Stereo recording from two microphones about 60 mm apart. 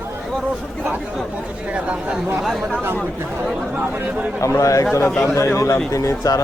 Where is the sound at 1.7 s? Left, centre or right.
Centre.